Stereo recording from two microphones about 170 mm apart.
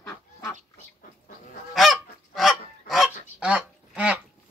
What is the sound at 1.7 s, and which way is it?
Goose, centre (ahead or behind).